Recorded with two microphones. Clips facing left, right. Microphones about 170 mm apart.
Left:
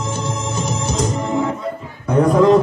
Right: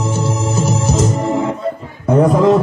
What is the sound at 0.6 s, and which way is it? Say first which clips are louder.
Music: right 5 dB; 5° right (ahead or behind).